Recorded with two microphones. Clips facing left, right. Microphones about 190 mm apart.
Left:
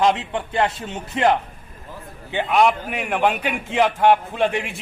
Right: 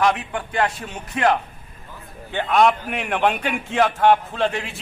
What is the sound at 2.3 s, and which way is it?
A man's voice, 10° left (ahead or behind).